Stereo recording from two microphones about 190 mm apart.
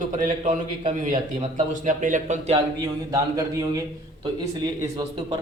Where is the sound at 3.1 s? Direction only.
15° right (ahead or behind).